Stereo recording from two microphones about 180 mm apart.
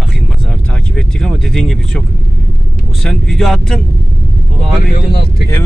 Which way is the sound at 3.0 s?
Centre (ahead or behind).